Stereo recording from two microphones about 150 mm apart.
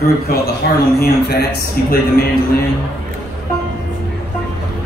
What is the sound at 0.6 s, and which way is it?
A man's voice, 90° left.